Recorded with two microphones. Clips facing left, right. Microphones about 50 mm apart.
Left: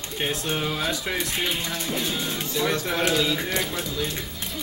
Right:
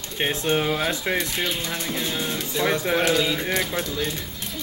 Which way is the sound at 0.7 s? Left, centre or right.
Centre.